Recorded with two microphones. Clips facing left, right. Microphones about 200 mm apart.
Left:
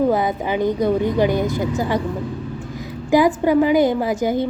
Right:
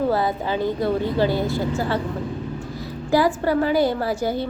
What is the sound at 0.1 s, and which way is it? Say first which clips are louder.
A woman's voice: left 2 dB; 15° left (ahead or behind).